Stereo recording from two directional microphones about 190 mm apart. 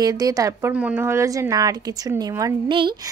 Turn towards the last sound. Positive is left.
turn(degrees=-25)  # may be behind; listen again after turning